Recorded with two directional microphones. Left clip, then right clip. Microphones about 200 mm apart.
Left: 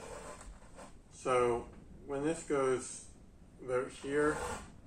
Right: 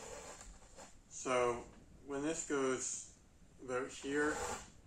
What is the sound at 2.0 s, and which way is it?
Speech, 25° right (ahead or behind).